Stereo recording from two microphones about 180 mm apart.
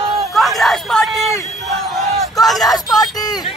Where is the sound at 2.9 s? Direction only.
20° left (ahead or behind).